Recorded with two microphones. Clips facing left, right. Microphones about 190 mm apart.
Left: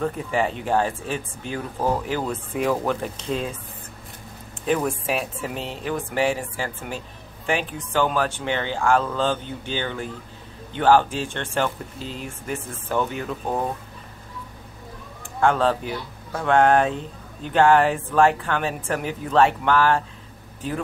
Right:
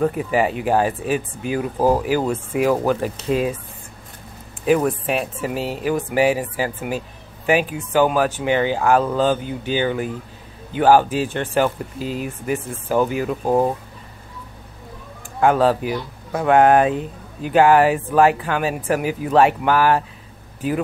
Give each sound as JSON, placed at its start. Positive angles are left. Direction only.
{"t": 0.0, "sound": "speech", "side_deg": -10}
{"t": 1.8, "sound": "speech", "side_deg": -35}
{"t": 2.0, "sound": "speech", "side_deg": -10}
{"t": 4.6, "sound": "speech", "side_deg": -5}
{"t": 13.4, "sound": "speech", "side_deg": -30}
{"t": 15.4, "sound": "speech", "side_deg": -10}